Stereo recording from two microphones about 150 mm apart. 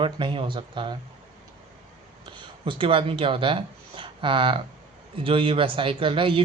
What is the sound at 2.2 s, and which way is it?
Speech, 35° right (ahead or behind).